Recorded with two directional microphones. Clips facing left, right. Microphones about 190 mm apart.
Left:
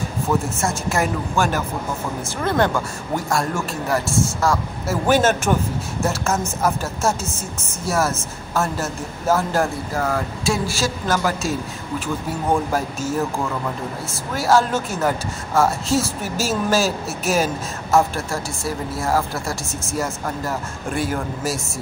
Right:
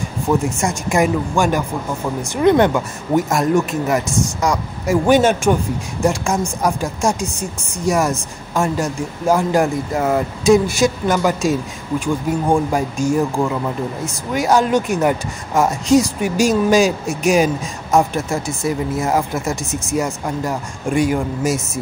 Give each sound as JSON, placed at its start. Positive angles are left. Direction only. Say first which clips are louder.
{"t": 0.6, "sound": "a woman's voice", "louder": "right 4 dB", "side_deg": -15}